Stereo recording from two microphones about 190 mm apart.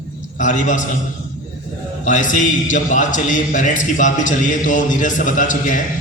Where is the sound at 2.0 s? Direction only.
40° left (ahead or behind).